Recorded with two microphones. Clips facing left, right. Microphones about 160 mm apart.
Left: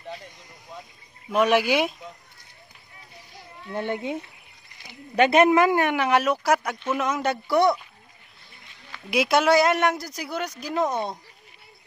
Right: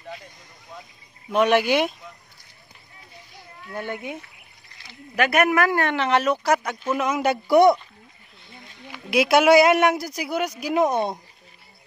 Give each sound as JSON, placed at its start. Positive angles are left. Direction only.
{"t": 1.3, "sound": "speech", "side_deg": 5}
{"t": 3.6, "sound": "speech", "side_deg": 25}
{"t": 9.1, "sound": "speech", "side_deg": -5}